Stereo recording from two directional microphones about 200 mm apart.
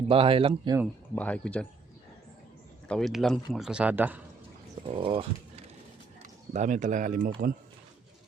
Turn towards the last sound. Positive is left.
turn(degrees=-40)  # may be behind; listen again after turning